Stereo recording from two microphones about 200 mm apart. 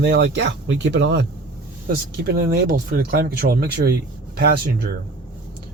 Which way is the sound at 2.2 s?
50° right (ahead or behind).